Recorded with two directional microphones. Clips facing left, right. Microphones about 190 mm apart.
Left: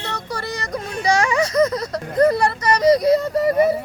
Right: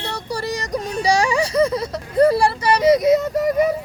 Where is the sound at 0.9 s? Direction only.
35° right (ahead or behind).